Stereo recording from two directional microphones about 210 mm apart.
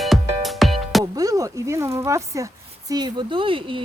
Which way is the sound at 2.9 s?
20° right (ahead or behind).